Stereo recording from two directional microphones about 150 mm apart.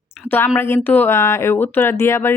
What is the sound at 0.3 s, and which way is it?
A woman's voice, 15° left (ahead or behind).